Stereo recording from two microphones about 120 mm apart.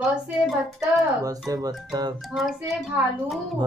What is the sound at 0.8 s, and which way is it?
Speech, 30° right (ahead or behind).